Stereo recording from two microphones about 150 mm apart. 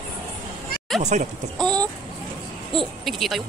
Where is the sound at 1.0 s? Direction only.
50° right (ahead or behind).